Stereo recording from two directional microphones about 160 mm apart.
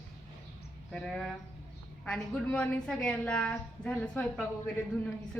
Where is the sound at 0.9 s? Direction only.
Centre (ahead or behind).